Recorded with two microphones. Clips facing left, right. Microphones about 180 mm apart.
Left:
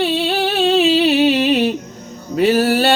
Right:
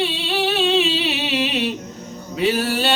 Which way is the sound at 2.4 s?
50° left (ahead or behind).